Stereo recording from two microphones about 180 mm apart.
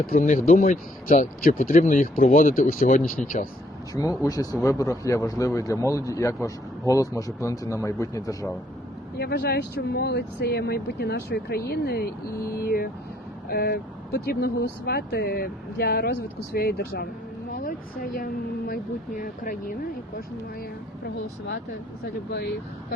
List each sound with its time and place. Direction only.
0.0 s speech: 45° left (ahead or behind)
3.2 s speech: centre (ahead or behind)
3.9 s speech: 20° left (ahead or behind)
9.1 s speech: 60° left (ahead or behind)
17.5 s a sound: 50° left (ahead or behind)
18.7 s speech: 50° left (ahead or behind)
22.0 s speech: 60° left (ahead or behind)